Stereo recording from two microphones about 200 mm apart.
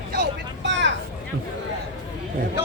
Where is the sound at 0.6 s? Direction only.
65° right (ahead or behind).